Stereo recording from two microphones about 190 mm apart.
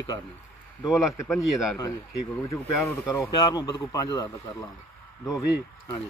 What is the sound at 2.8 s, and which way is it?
A man's voice, 15° left (ahead or behind).